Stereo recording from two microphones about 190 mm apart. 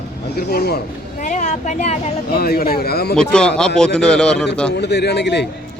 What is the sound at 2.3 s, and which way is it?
Speech, 55° left (ahead or behind).